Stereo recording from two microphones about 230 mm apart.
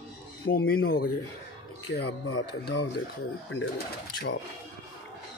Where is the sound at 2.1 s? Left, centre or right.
Left.